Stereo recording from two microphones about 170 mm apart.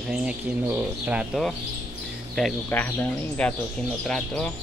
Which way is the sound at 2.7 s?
10° left (ahead or behind).